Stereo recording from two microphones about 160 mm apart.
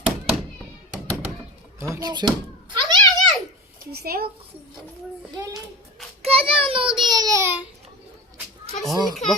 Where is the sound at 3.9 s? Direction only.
75° right (ahead or behind).